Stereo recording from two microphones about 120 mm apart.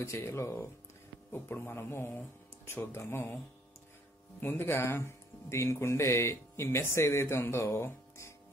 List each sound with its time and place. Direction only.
0.0 s speech: 25° left (ahead or behind)
4.4 s speech: 20° left (ahead or behind)